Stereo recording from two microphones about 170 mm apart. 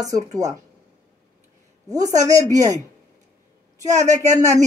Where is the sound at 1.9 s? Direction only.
20° right (ahead or behind).